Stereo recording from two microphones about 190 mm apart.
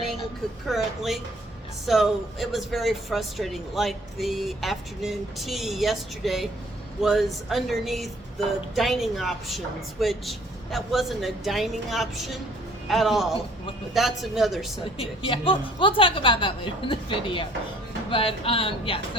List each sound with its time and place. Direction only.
0.7 s speech: centre (ahead or behind)
15.3 s a woman's voice: 25° left (ahead or behind)